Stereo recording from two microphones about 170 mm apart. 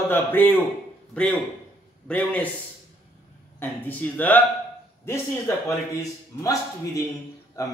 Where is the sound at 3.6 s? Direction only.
10° left (ahead or behind).